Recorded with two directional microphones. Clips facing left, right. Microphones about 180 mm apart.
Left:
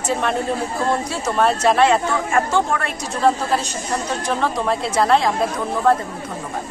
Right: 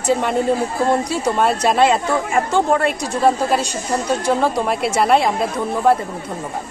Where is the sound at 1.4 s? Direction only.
15° right (ahead or behind).